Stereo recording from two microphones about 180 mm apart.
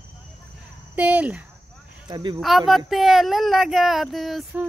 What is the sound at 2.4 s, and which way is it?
Speech, centre (ahead or behind).